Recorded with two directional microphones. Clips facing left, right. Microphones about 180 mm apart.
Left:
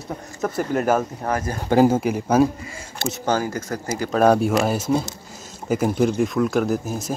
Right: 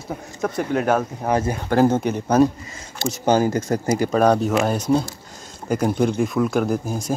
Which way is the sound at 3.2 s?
20° right (ahead or behind).